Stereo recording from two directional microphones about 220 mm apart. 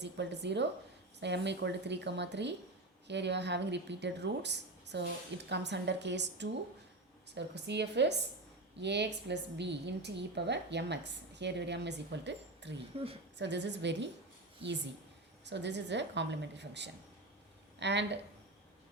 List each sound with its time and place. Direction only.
0.0 s a woman's voice: 50° right (ahead or behind)
14.6 s a woman's voice: 25° right (ahead or behind)
15.4 s a woman's voice: 50° right (ahead or behind)